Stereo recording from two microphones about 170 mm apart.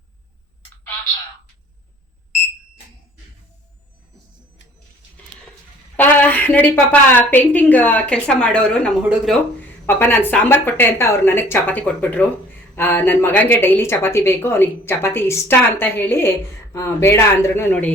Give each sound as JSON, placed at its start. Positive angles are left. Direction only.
{"t": 6.0, "sound": "speech", "side_deg": 10}
{"t": 9.8, "sound": "speech", "side_deg": 10}